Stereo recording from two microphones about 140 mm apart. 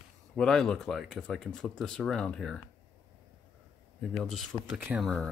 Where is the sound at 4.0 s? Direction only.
Centre (ahead or behind).